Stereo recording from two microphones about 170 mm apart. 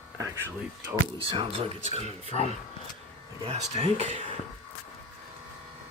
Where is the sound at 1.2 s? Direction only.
35° right (ahead or behind).